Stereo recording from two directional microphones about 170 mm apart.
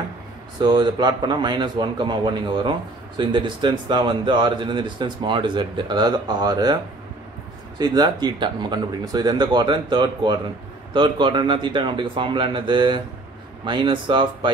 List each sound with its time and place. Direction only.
0.6 s a man's voice: 25° right (ahead or behind)
7.8 s a man's voice: 25° right (ahead or behind)